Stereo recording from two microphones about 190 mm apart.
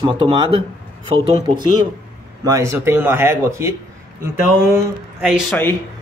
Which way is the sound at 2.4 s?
15° right (ahead or behind).